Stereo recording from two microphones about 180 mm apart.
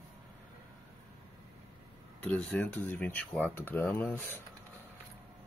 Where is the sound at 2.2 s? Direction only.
10° left (ahead or behind).